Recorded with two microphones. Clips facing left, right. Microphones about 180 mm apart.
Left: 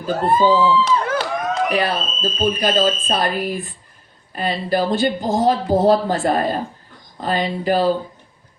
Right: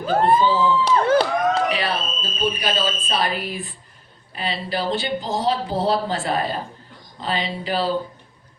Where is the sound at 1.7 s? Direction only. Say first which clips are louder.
Left 4 dB; 50° left (ahead or behind).